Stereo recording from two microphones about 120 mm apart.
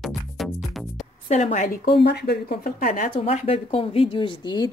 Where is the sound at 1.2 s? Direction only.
75° left (ahead or behind).